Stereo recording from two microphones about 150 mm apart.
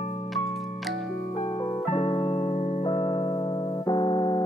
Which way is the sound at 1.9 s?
40° left (ahead or behind).